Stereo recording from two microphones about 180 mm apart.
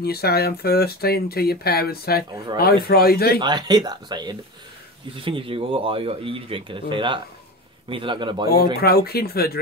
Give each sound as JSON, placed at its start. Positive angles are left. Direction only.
{"t": 0.0, "sound": "speech", "side_deg": 60}
{"t": 3.3, "sound": "speech", "side_deg": -25}
{"t": 8.8, "sound": "speech", "side_deg": 60}